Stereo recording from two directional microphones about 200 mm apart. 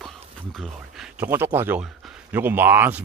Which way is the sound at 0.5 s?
Centre (ahead or behind).